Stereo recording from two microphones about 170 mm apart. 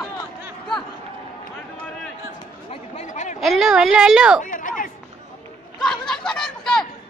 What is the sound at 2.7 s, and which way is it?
Chatter, 40° left (ahead or behind).